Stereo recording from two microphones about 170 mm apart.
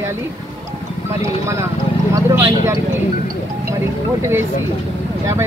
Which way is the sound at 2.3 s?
20° right (ahead or behind).